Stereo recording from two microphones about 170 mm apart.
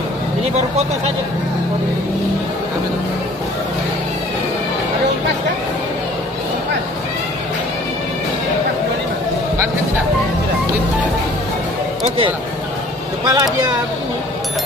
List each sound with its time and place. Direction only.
13.2 s speech: 25° right (ahead or behind)